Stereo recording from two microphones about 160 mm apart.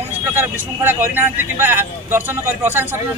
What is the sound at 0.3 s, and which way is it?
Speech, 15° right (ahead or behind).